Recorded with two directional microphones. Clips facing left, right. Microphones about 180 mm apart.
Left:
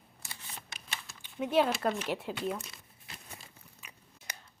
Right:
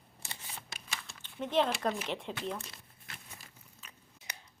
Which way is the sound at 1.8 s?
5° left (ahead or behind).